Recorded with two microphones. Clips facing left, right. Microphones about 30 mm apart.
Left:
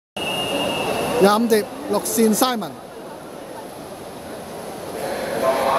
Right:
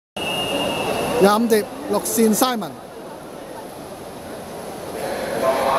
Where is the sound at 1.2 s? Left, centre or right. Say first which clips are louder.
Even; left.